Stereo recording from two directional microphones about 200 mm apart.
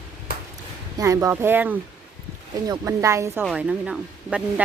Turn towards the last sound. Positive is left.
turn(degrees=-5)  # may be behind; listen again after turning